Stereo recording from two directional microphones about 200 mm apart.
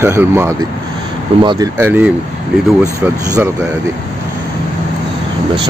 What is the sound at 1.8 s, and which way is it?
Speech, 10° right (ahead or behind).